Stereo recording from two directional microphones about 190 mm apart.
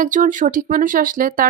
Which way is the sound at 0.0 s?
45° right (ahead or behind).